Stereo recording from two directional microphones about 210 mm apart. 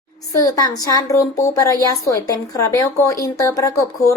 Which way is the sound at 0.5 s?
15° left (ahead or behind).